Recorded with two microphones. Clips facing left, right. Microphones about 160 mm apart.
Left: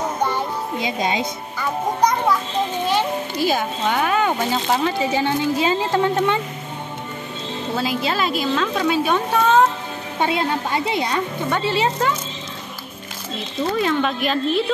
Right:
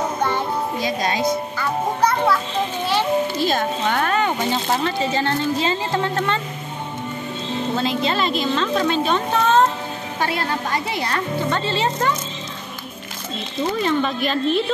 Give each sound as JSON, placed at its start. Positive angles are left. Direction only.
{"t": 0.2, "sound": "music", "side_deg": 15}
{"t": 2.9, "sound": "a child's voice", "side_deg": 15}
{"t": 7.7, "sound": "a woman's voice", "side_deg": 5}
{"t": 10.2, "sound": "a child's voice", "side_deg": 20}
{"t": 13.7, "sound": "a woman's voice", "side_deg": 5}